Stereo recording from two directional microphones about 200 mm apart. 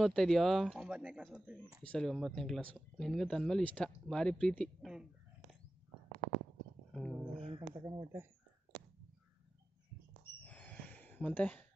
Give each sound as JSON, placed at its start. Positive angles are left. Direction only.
{"t": 0.0, "sound": "speech", "side_deg": 0}
{"t": 1.8, "sound": "speech", "side_deg": 5}
{"t": 6.9, "sound": "a sound", "side_deg": 5}
{"t": 7.4, "sound": "speech", "side_deg": -25}
{"t": 7.8, "sound": "speech", "side_deg": -15}
{"t": 10.4, "sound": "a sound", "side_deg": 5}